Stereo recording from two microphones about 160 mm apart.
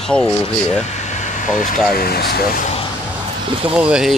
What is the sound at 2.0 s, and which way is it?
Speech, 75° left (ahead or behind).